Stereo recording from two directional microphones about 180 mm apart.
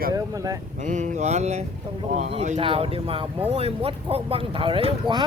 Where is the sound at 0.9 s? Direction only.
40° right (ahead or behind).